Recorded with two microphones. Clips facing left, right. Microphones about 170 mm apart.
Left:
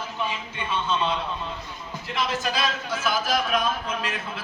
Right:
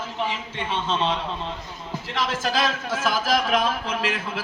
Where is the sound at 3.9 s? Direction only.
80° right.